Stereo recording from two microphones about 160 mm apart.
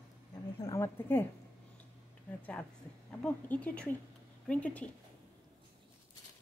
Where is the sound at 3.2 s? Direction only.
10° left (ahead or behind).